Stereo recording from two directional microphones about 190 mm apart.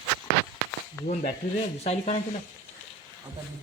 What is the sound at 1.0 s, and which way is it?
Speech, 40° left (ahead or behind).